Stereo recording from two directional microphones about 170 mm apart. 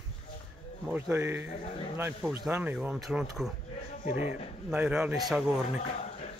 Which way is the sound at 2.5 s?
10° right (ahead or behind).